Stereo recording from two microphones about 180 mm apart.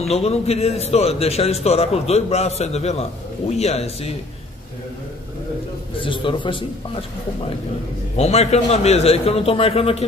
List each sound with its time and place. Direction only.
0.0 s a man's voice: 35° left (ahead or behind)
5.9 s a man's voice: 30° left (ahead or behind)
8.2 s a man's voice: 35° left (ahead or behind)